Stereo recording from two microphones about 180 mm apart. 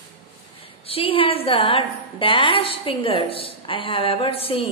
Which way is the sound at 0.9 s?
30° left (ahead or behind).